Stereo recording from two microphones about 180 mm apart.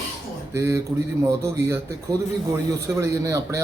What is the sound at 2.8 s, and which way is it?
Speech, 15° right (ahead or behind).